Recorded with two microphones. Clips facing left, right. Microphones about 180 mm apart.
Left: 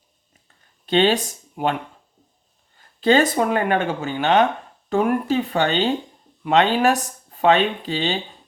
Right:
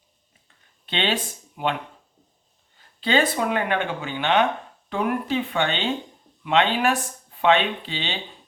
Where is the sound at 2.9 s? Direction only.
45° left (ahead or behind).